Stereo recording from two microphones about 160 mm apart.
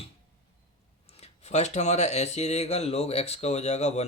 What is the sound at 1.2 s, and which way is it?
Speech, 45° left (ahead or behind).